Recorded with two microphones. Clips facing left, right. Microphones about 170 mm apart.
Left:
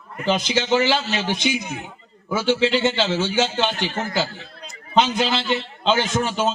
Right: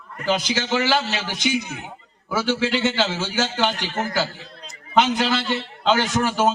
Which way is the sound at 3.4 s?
20° left (ahead or behind).